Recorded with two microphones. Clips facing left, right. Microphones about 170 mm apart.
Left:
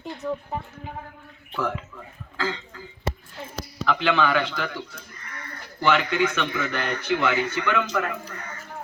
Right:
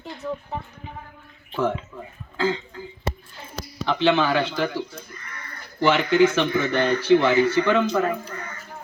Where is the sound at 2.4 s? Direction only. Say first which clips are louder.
Right 6 dB; 30° right (ahead or behind).